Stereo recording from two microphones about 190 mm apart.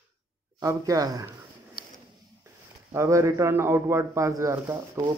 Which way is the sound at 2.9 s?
15° right (ahead or behind).